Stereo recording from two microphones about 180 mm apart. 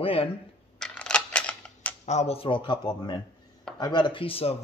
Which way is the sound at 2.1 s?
35° left (ahead or behind).